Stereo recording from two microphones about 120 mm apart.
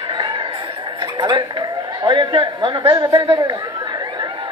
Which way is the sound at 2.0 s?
40° right (ahead or behind).